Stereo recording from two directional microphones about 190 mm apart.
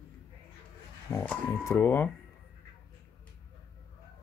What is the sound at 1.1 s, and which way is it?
Speech, 15° left (ahead or behind).